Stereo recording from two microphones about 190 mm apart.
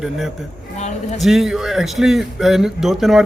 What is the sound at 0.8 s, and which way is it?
Speech, 35° left (ahead or behind).